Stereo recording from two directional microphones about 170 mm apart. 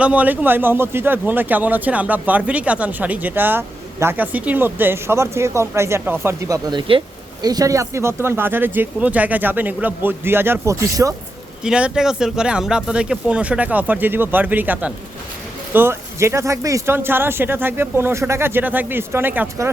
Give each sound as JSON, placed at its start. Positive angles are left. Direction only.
{"t": 0.0, "sound": "speech", "side_deg": -10}
{"t": 6.7, "sound": "speech", "side_deg": -30}
{"t": 11.6, "sound": "speech", "side_deg": -5}